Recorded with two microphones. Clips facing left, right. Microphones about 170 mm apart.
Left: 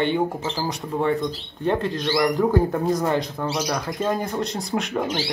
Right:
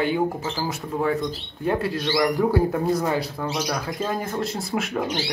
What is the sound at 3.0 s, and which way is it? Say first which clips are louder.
Speech: left 1 dB; 5° right (ahead or behind).